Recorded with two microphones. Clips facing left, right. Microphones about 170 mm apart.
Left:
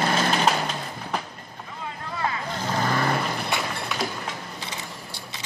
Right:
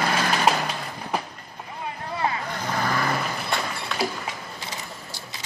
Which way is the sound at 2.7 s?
25° left (ahead or behind).